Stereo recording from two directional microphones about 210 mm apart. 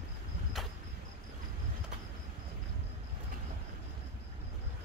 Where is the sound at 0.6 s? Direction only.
Centre (ahead or behind).